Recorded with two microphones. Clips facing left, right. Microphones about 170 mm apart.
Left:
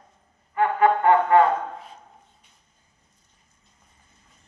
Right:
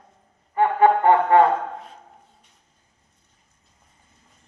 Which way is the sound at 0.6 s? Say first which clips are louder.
Right 3 dB; 30° right (ahead or behind).